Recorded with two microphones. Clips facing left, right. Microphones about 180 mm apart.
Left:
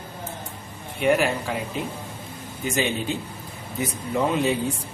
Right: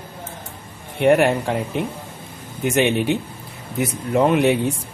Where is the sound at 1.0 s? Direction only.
65° right (ahead or behind).